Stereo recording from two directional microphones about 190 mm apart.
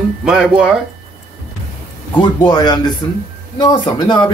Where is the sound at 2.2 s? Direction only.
25° left (ahead or behind).